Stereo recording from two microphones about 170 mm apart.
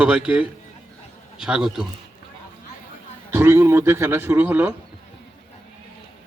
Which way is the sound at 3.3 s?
15° right (ahead or behind).